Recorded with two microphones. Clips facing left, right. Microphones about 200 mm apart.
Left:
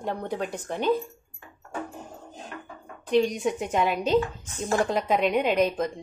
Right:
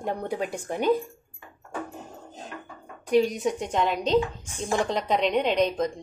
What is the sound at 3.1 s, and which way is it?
A woman's voice, 5° right (ahead or behind).